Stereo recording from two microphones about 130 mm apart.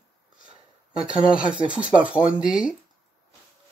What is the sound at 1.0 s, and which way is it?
Speech, 5° right (ahead or behind).